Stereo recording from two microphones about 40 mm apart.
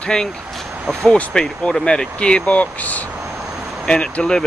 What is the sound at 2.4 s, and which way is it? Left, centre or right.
Speech, left.